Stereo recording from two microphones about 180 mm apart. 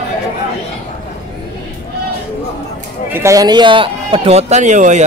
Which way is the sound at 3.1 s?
20° right (ahead or behind).